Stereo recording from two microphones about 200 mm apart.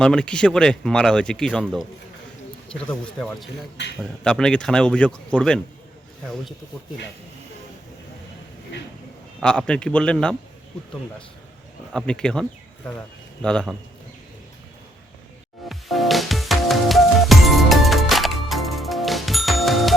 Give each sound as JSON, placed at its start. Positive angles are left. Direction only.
{"t": 0.0, "sound": "speech", "side_deg": 5}
{"t": 3.8, "sound": "a man's voice", "side_deg": 55}
{"t": 4.2, "sound": "speech", "side_deg": 5}
{"t": 9.4, "sound": "speech", "side_deg": 5}
{"t": 11.9, "sound": "speech", "side_deg": 5}
{"t": 15.7, "sound": "music", "side_deg": 0}